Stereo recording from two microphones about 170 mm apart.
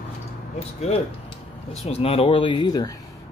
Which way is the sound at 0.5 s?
40° left (ahead or behind).